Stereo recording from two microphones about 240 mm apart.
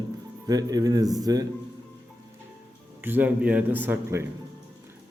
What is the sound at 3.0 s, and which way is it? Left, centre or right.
A man's voice, centre.